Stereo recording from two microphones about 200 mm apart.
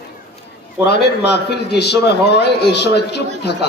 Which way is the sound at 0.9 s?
55° left (ahead or behind).